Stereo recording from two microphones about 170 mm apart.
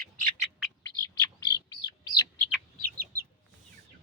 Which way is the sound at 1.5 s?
25° left (ahead or behind).